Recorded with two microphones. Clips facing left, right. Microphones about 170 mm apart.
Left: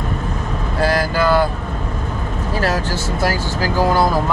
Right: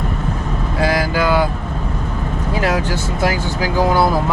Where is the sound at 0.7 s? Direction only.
10° right (ahead or behind).